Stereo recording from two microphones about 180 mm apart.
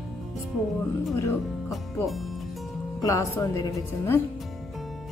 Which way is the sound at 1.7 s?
Centre (ahead or behind).